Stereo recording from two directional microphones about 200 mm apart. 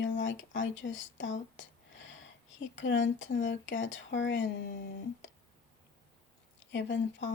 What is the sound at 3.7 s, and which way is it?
Speech, 70° left (ahead or behind).